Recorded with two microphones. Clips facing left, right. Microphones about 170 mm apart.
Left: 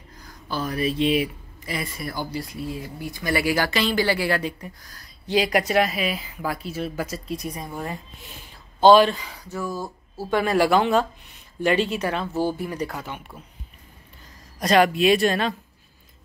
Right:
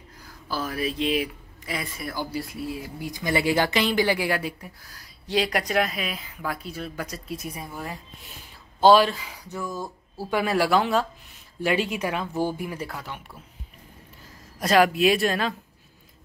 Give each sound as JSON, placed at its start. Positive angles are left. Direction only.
{"t": 0.2, "sound": "speech", "side_deg": -5}
{"t": 3.1, "sound": "speech", "side_deg": -20}
{"t": 8.8, "sound": "speech", "side_deg": -5}
{"t": 9.6, "sound": "speech", "side_deg": 5}
{"t": 10.1, "sound": "speech", "side_deg": -5}
{"t": 14.6, "sound": "speech", "side_deg": -5}